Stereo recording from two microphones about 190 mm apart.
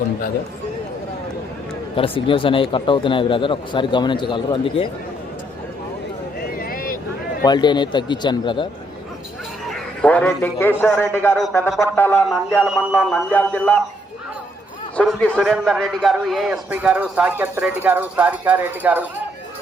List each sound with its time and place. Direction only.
2.0 s speech: 30° left (ahead or behind)
6.4 s a sound: 50° left (ahead or behind)
7.4 s speech: 20° left (ahead or behind)
9.6 s a man's voice: centre (ahead or behind)
11.9 s a sound: 10° left (ahead or behind)
14.9 s a man's voice: 5° left (ahead or behind); by 19.0 s 10° right (ahead or behind)